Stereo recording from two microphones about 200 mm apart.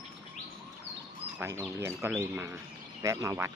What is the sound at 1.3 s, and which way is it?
Speech, 10° right (ahead or behind).